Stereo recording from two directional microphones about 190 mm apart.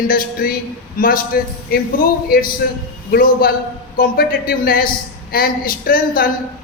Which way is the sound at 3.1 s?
50° left (ahead or behind).